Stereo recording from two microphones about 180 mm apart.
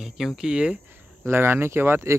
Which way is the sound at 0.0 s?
Centre (ahead or behind).